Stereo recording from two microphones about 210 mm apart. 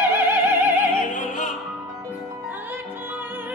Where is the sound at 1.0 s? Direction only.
35° left (ahead or behind).